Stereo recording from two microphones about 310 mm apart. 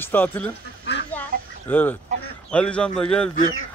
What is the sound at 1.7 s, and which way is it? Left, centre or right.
A man's voice, centre.